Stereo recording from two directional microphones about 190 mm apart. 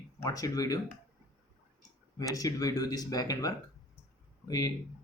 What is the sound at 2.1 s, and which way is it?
Speech, 20° left (ahead or behind).